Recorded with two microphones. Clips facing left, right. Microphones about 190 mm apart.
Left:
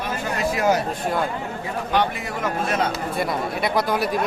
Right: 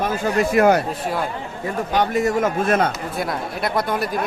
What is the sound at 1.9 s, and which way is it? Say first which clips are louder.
Speech: right 5 dB; 45° right (ahead or behind).